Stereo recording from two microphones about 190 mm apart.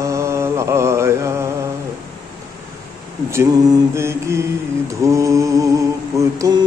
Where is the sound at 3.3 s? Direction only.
15° right (ahead or behind).